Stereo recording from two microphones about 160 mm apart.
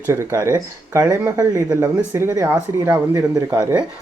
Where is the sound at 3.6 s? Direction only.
10° right (ahead or behind).